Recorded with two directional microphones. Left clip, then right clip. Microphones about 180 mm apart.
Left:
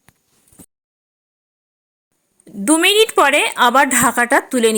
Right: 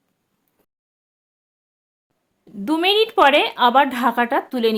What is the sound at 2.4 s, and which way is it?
A woman's voice, 25° left (ahead or behind).